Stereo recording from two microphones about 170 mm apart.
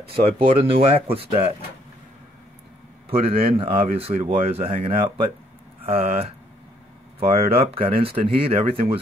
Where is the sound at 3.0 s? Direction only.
35° right (ahead or behind).